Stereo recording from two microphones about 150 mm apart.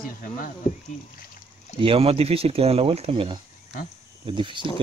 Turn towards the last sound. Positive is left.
turn(degrees=-35)  # may be behind; listen again after turning